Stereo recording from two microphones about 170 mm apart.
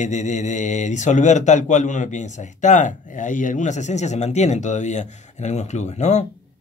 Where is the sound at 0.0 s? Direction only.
45° left (ahead or behind).